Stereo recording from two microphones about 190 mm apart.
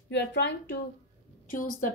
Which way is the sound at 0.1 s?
65° left (ahead or behind).